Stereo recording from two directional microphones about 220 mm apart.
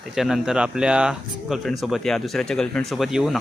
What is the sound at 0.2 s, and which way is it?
Speech, centre (ahead or behind).